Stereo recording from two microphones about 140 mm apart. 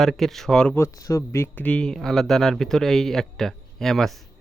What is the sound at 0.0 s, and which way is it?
Speech, centre (ahead or behind).